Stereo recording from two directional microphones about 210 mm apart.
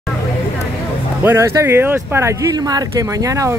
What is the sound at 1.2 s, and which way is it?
Speech, 10° right (ahead or behind).